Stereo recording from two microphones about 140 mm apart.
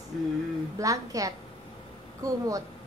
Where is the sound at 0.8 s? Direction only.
25° right (ahead or behind).